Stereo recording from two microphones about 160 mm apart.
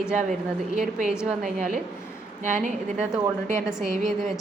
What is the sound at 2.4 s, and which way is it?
Speech, 55° right (ahead or behind).